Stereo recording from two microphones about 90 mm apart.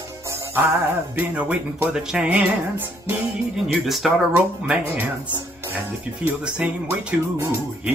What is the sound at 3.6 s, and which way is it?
Speech, centre (ahead or behind).